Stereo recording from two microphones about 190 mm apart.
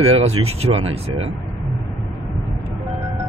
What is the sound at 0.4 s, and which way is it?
Speech, 35° right (ahead or behind).